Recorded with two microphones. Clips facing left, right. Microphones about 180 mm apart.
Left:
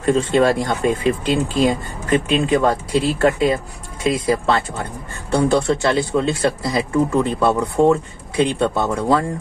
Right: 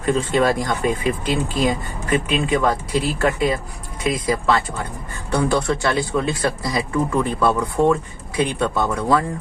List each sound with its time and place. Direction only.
0.0 s speech: 30° left (ahead or behind)